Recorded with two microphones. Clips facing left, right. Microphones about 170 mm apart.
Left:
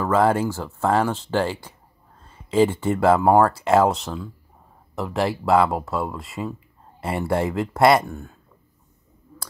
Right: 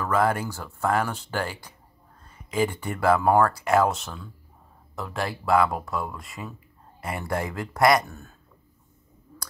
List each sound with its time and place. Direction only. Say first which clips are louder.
0.0 s speech: left 5 dB; 25° left (ahead or behind)
8.1 s speech: left 8 dB; 15° left (ahead or behind)